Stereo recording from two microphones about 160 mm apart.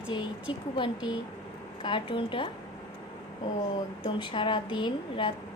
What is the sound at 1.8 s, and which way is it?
Speech, 30° left (ahead or behind).